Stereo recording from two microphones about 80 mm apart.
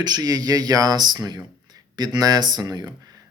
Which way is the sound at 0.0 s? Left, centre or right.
Right.